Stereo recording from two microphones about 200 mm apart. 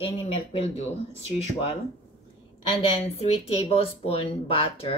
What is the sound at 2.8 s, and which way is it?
Speech, 30° left (ahead or behind).